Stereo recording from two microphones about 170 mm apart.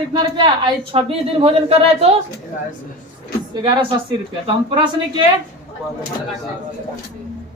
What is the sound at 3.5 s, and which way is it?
A woman's voice, 25° right (ahead or behind).